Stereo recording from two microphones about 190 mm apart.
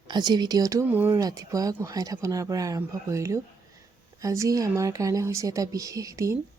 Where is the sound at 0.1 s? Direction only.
20° right (ahead or behind).